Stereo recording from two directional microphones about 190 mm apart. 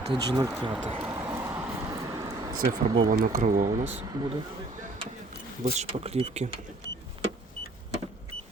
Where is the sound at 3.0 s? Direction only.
45° right (ahead or behind).